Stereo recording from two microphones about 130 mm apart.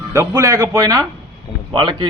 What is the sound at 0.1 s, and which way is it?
Speech, 20° right (ahead or behind).